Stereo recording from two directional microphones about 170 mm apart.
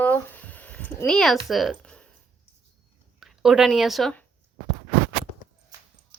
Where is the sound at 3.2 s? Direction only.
Centre (ahead or behind).